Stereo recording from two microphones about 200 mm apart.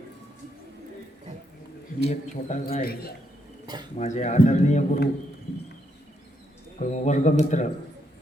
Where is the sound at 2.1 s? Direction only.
35° left (ahead or behind).